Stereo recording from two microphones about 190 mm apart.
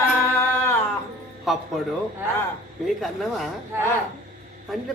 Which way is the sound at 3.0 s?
Centre (ahead or behind).